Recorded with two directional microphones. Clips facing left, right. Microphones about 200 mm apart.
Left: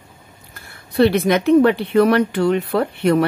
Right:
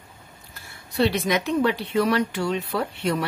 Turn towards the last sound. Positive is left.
turn(degrees=60)  # may be behind; listen again after turning